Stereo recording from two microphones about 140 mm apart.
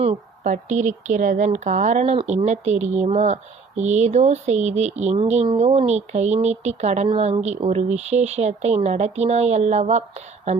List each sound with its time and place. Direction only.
0.4 s speech: 60° right (ahead or behind)